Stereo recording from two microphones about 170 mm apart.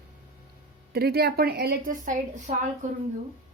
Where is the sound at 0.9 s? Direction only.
65° right (ahead or behind); by 2.5 s 50° right (ahead or behind).